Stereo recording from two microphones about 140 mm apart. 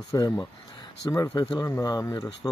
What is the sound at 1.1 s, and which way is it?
Speech, 30° left (ahead or behind).